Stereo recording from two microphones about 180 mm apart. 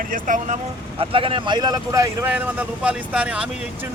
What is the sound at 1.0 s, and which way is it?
Speech, 30° right (ahead or behind).